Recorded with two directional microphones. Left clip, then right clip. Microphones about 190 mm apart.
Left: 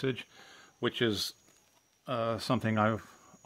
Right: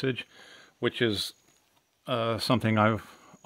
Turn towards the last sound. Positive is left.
turn(degrees=-45)  # may be behind; listen again after turning